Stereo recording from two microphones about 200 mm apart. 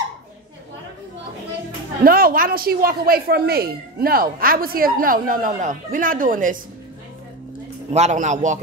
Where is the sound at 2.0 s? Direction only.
45° right (ahead or behind).